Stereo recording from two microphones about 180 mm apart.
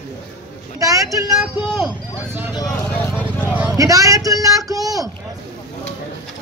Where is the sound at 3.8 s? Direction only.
20° right (ahead or behind).